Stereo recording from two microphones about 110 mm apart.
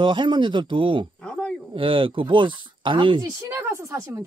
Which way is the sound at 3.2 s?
25° right (ahead or behind).